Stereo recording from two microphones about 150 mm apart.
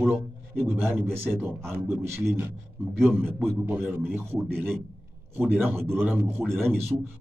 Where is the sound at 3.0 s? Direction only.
15° right (ahead or behind).